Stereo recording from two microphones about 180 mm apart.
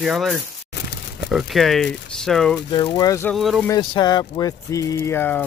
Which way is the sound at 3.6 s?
25° left (ahead or behind).